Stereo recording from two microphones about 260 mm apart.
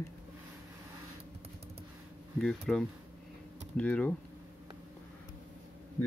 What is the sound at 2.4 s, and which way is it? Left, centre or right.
Speech, centre.